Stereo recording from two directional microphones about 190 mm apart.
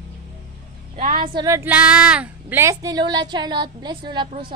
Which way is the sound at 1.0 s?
50° right (ahead or behind).